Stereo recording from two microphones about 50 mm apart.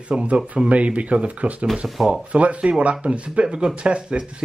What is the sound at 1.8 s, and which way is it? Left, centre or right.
Speech, centre.